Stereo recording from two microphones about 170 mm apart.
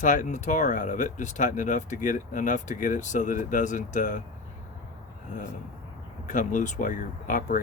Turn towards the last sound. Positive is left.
turn(degrees=50)  # may be behind; listen again after turning